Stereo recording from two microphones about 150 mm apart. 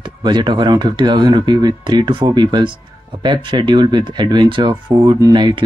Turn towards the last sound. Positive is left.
turn(degrees=-30)  # may be behind; listen again after turning